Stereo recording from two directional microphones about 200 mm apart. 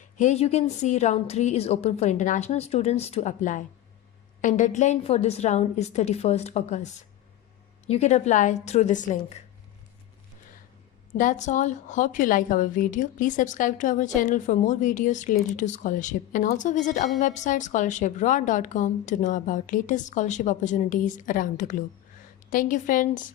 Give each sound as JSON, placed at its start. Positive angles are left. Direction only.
{"t": 0.2, "sound": "a woman's voice", "side_deg": 35}
{"t": 7.9, "sound": "a woman's voice", "side_deg": 35}
{"t": 11.1, "sound": "a woman's voice", "side_deg": 40}